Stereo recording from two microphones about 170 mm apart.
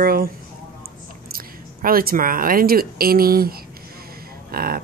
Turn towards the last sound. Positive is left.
turn(degrees=-60)  # may be behind; listen again after turning